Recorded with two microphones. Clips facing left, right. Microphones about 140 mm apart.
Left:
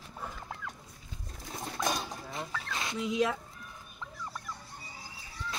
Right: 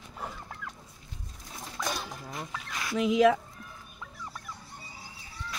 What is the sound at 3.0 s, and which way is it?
Speech, 90° right.